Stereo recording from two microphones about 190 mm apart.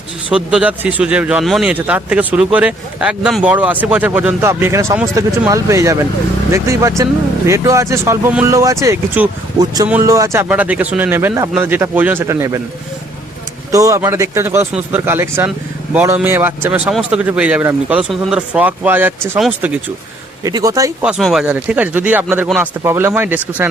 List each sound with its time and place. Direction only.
0.3 s a man's voice: 5° right (ahead or behind)
13.7 s a man's voice: 15° right (ahead or behind)
20.4 s a man's voice: 20° right (ahead or behind)
21.0 s a man's voice: centre (ahead or behind)